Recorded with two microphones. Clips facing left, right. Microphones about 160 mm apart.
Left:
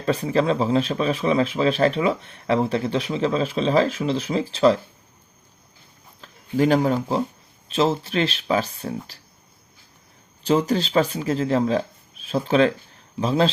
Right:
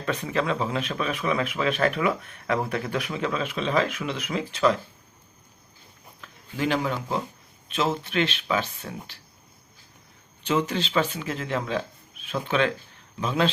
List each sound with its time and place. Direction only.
0.0 s speech: 35° left (ahead or behind)
6.2 s speech: 40° left (ahead or behind)
10.4 s speech: 35° left (ahead or behind)